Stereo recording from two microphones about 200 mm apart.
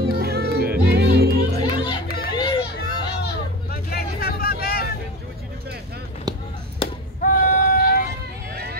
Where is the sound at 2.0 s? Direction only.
50° left (ahead or behind).